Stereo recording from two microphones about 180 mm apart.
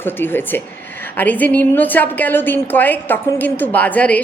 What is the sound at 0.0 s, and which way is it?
A woman's voice, 10° left (ahead or behind).